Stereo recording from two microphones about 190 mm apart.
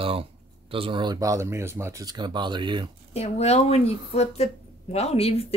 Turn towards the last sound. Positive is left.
turn(degrees=30)  # may be behind; listen again after turning